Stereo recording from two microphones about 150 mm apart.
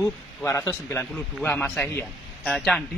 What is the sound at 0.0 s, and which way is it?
A man's voice, 15° left (ahead or behind).